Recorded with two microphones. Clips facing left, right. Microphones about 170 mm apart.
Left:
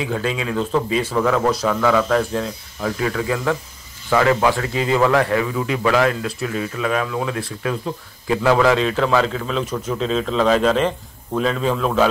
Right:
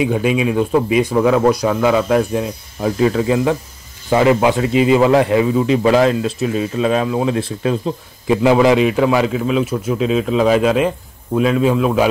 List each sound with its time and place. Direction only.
0.0 s speech: 15° right (ahead or behind)